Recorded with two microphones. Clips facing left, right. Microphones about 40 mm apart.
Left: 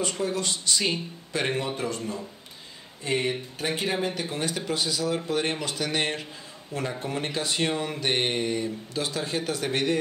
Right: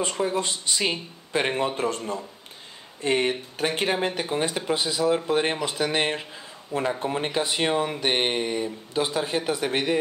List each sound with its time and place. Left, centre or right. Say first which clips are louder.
0.0 s speech: right 3 dB; right
1.8 s speech: right 3 dB; right; by 9.9 s centre